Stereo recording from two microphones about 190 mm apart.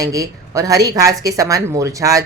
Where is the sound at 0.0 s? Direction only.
15° right (ahead or behind).